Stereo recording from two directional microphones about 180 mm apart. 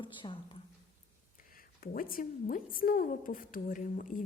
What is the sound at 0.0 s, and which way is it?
Speech, 30° left (ahead or behind).